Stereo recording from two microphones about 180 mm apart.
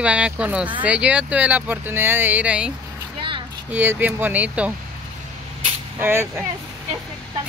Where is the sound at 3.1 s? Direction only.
30° right (ahead or behind).